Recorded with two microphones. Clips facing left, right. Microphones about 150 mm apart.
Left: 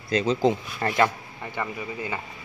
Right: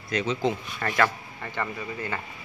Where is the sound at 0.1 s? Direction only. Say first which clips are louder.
Left 4 dB; 35° left (ahead or behind); by 2.2 s 10° left (ahead or behind).